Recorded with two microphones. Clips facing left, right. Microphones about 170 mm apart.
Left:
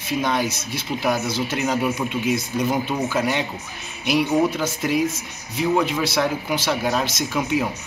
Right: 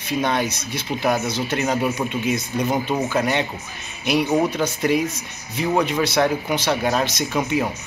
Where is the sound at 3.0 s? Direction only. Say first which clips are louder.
Right 1 dB; centre (ahead or behind).